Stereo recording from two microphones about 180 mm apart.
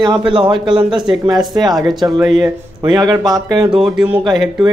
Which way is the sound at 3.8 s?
5° right (ahead or behind).